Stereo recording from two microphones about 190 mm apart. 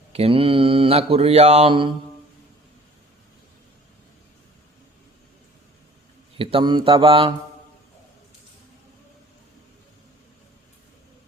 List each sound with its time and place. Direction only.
0.1 s mantra: 30° right (ahead or behind)
6.3 s speech: 30° right (ahead or behind)